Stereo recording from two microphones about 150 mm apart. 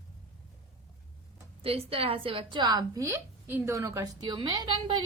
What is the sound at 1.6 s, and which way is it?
A woman's voice, 40° right (ahead or behind).